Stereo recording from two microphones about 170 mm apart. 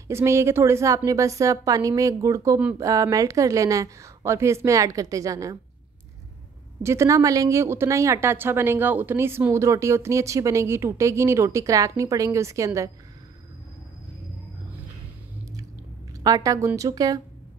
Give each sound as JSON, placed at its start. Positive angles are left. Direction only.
{"t": 0.1, "sound": "a woman's voice", "side_deg": -15}
{"t": 6.8, "sound": "a woman's voice", "side_deg": -15}
{"t": 16.1, "sound": "a woman's voice", "side_deg": -20}